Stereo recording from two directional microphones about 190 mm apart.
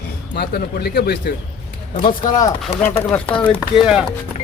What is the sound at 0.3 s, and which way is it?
Speech, 55° left (ahead or behind).